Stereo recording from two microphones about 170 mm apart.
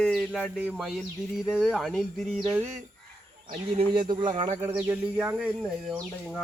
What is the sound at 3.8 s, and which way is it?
Speech, 30° right (ahead or behind).